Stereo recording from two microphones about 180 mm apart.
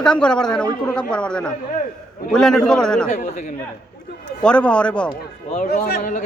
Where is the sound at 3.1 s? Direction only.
40° left (ahead or behind).